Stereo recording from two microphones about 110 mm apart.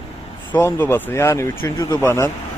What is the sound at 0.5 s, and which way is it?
Speech, 20° left (ahead or behind).